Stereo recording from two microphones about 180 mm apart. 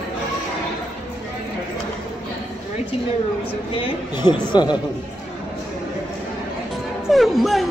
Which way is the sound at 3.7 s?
25° left (ahead or behind).